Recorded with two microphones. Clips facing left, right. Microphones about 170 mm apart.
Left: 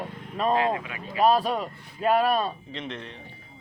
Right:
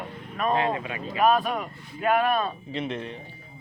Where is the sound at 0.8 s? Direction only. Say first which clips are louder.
Right 4 dB; 30° right (ahead or behind).